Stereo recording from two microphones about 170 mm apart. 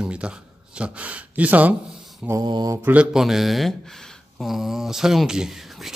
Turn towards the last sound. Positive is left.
turn(degrees=-5)  # may be behind; listen again after turning